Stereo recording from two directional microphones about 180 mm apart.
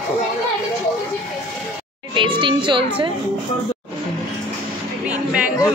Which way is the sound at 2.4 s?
25° right (ahead or behind).